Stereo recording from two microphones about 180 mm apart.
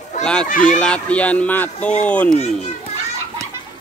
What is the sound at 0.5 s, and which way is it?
Speech, 50° left (ahead or behind).